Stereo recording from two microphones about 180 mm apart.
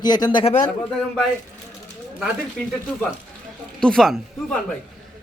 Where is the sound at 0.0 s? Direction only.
25° left (ahead or behind).